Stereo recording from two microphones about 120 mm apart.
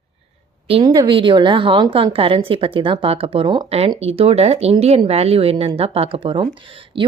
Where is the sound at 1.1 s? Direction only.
45° right (ahead or behind).